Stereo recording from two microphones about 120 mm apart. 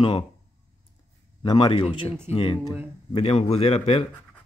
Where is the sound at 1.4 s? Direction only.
40° left (ahead or behind); by 4.1 s 55° left (ahead or behind).